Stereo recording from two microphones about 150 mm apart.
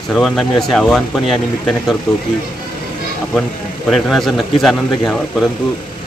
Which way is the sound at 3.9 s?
Centre (ahead or behind).